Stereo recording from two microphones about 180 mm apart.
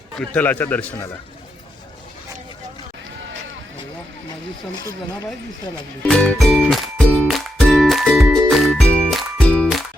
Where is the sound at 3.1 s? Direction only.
90° right.